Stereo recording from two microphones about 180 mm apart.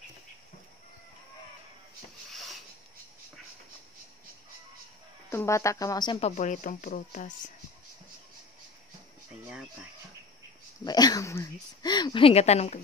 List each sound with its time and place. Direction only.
2.3 s a sound: centre (ahead or behind)
5.3 s speech: 15° left (ahead or behind); by 7.3 s 45° left (ahead or behind)
10.8 s speech: 20° left (ahead or behind); by 12.8 s 35° left (ahead or behind)